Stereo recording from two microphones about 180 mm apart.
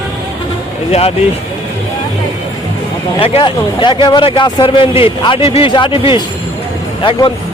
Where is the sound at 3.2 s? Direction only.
30° left (ahead or behind).